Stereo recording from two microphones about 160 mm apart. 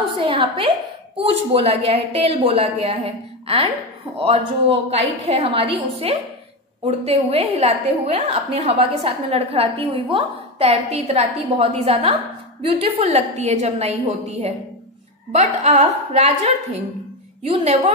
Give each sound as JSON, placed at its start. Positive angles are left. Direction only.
{"t": 0.2, "sound": "a woman's voice", "side_deg": -35}
{"t": 17.4, "sound": "a woman's voice", "side_deg": -45}